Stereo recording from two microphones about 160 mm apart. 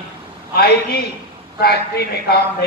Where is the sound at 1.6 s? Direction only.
85° left.